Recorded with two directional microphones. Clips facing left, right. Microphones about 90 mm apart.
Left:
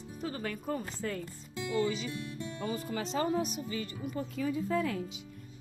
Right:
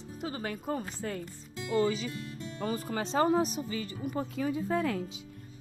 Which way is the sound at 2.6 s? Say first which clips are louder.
Right 3 dB; 40° right (ahead or behind).